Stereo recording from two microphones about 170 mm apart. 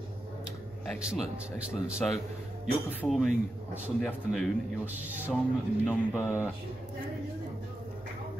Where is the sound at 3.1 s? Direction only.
Centre (ahead or behind).